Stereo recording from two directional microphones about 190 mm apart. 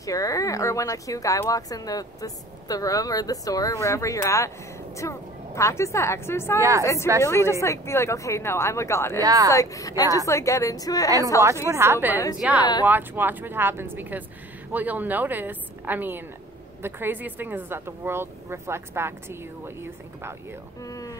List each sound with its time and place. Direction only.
0.0 s a woman's voice: 20° left (ahead or behind)
6.6 s speech: 15° right (ahead or behind)
7.2 s speech: 15° left (ahead or behind)
9.2 s speech: 20° right (ahead or behind)
9.5 s speech: 15° left (ahead or behind)
11.4 s speech: 15° right (ahead or behind)
20.8 s a sound: 20° left (ahead or behind)